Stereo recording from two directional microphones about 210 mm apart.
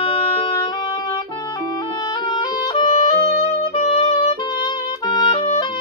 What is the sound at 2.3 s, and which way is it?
Music, 20° left (ahead or behind).